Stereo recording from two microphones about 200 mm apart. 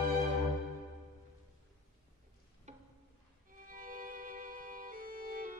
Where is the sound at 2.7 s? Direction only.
35° right (ahead or behind).